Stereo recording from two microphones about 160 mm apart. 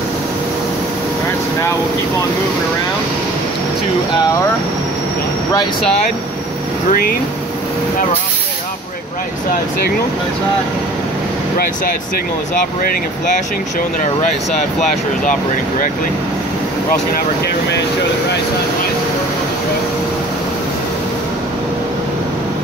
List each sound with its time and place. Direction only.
6.9 s speech: 65° left (ahead or behind)
11.5 s speech: 65° left (ahead or behind)